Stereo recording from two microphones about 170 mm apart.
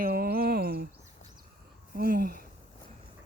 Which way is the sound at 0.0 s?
60° right (ahead or behind).